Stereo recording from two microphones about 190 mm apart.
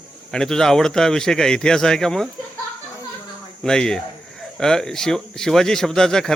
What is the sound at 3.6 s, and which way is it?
Speech, 5° left (ahead or behind).